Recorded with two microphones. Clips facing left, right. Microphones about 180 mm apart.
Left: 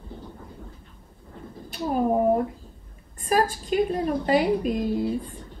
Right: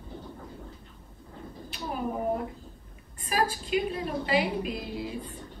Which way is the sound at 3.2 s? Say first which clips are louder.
Left 5 dB; 45° left (ahead or behind).